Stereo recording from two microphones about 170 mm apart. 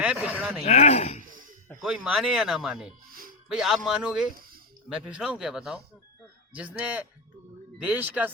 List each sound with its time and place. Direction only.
0.0 s speech: 5° right (ahead or behind)
0.6 s speech: 40° left (ahead or behind)
1.8 s speech: 5° right (ahead or behind)
3.1 s music: 55° right (ahead or behind)
3.5 s speech: 5° right (ahead or behind)